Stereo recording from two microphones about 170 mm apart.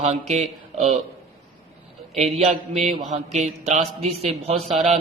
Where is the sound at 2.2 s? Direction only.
40° right (ahead or behind).